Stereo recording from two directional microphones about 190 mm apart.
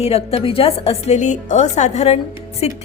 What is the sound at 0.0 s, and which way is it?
A woman's voice, 30° left (ahead or behind).